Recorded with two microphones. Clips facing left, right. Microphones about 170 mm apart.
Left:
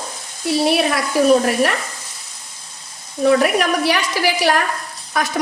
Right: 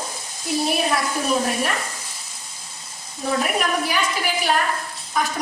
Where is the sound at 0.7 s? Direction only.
80° left.